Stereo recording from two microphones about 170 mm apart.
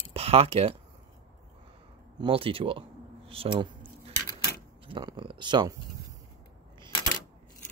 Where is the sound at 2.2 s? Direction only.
30° right (ahead or behind).